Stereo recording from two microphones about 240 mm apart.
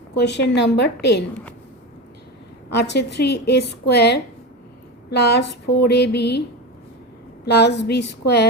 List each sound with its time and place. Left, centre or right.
0.1 s a woman's voice: left
2.6 s a woman's voice: left
7.4 s a woman's voice: left